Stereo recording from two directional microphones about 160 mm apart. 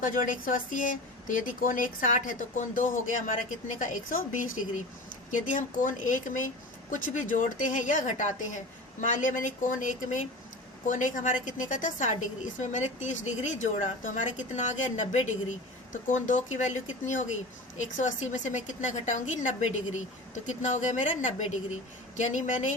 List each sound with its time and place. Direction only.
0.0 s a woman's voice: 55° left (ahead or behind)